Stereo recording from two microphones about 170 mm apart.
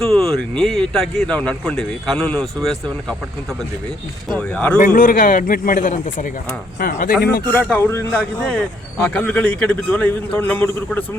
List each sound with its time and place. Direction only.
0.0 s speech: centre (ahead or behind)
4.4 s a man's voice: 5° left (ahead or behind)
4.8 s a man's voice: 50° left (ahead or behind)
7.7 s a man's voice: 15° left (ahead or behind)